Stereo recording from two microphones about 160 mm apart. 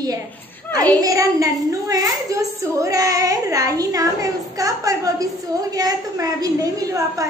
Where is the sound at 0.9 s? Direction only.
20° right (ahead or behind).